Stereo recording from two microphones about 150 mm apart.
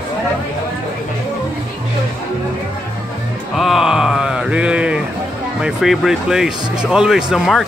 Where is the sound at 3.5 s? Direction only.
Centre (ahead or behind).